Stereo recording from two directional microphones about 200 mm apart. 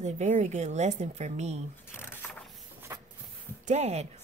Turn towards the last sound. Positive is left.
turn(degrees=-35)  # may be behind; listen again after turning